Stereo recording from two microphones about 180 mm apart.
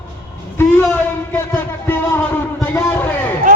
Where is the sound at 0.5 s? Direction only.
10° left (ahead or behind).